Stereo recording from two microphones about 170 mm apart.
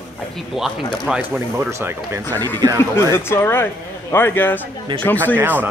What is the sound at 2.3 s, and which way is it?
Speech, 10° left (ahead or behind).